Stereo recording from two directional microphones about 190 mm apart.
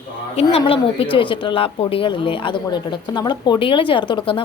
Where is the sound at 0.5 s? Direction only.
30° left (ahead or behind).